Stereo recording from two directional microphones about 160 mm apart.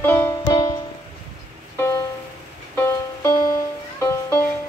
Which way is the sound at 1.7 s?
15° left (ahead or behind).